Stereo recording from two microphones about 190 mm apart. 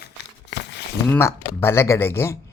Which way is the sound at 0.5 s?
65° left (ahead or behind).